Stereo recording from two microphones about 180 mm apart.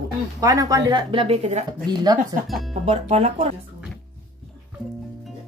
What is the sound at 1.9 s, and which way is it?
Speech, 20° right (ahead or behind).